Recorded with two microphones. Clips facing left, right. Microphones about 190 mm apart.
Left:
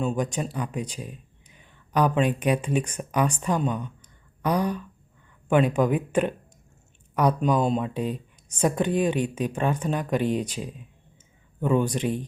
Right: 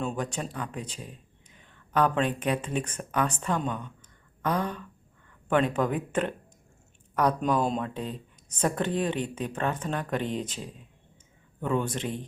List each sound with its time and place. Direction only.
0.2 s speech: 10° left (ahead or behind)